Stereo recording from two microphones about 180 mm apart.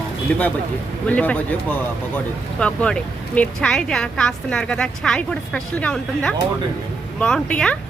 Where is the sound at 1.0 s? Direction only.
5° left (ahead or behind).